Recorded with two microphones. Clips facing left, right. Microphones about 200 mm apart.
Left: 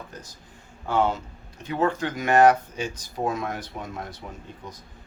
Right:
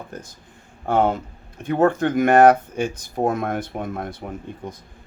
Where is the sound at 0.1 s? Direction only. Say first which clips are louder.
Right 6 dB; 55° right (ahead or behind).